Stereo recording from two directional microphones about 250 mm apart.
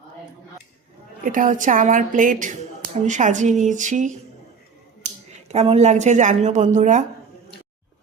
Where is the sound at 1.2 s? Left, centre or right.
Right.